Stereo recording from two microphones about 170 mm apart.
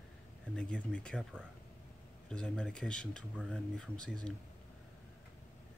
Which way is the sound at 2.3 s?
5° left (ahead or behind).